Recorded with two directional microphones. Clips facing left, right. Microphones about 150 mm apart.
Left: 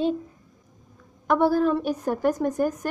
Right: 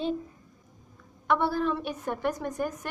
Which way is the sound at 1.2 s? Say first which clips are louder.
Left 6 dB; 45° left (ahead or behind).